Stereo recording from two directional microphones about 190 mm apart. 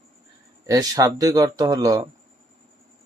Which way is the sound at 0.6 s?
20° right (ahead or behind).